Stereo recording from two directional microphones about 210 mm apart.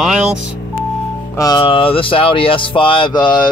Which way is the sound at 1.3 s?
15° left (ahead or behind).